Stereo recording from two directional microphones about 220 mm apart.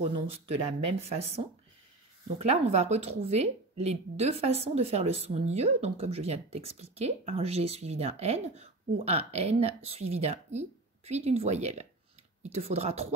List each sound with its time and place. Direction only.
0.5 s speech: 25° right (ahead or behind)